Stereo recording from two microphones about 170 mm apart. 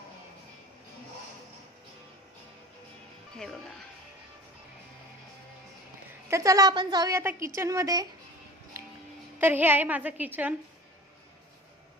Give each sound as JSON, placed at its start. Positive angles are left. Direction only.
{"t": 3.3, "sound": "speech", "side_deg": 5}
{"t": 6.2, "sound": "a woman's voice", "side_deg": -20}
{"t": 9.4, "sound": "a woman's voice", "side_deg": -10}